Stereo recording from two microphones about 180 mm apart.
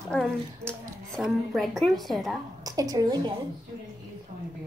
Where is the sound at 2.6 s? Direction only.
20° right (ahead or behind).